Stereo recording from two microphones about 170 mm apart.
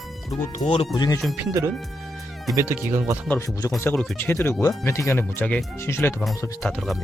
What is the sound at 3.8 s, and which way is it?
Speech, 10° left (ahead or behind).